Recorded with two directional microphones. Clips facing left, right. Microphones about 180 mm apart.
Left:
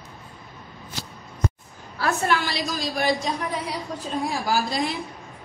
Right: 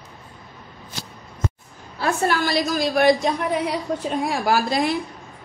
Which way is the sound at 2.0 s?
35° right (ahead or behind).